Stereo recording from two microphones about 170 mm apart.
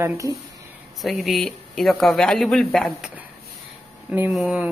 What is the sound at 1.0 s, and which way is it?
Speech, centre (ahead or behind).